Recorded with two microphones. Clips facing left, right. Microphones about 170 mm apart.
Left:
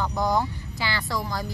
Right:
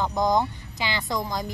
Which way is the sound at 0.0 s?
20° right (ahead or behind).